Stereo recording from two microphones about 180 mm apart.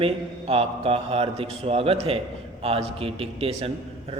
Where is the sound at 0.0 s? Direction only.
30° right (ahead or behind).